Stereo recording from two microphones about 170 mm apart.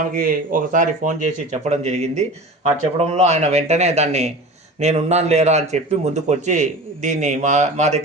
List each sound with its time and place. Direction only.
0.0 s a man's voice: 55° right (ahead or behind)